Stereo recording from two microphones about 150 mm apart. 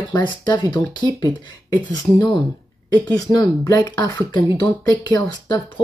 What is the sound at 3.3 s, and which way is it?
Speech, 25° left (ahead or behind).